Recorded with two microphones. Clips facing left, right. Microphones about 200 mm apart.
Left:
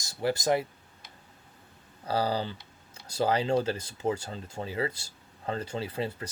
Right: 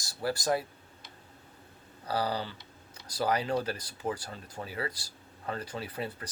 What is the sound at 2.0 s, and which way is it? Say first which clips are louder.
Speech: left 3 dB; 30° left (ahead or behind).